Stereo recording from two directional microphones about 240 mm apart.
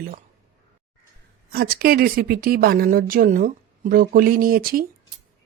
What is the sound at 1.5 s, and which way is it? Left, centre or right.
Speech, right.